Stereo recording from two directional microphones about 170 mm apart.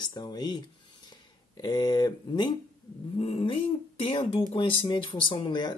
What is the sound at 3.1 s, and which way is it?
Speech, 35° left (ahead or behind).